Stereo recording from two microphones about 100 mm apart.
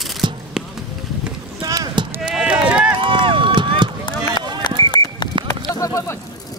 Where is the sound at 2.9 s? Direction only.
60° right (ahead or behind).